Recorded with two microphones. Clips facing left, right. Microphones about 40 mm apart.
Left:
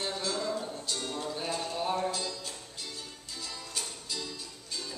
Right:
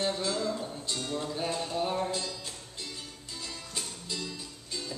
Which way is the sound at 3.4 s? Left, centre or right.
Centre.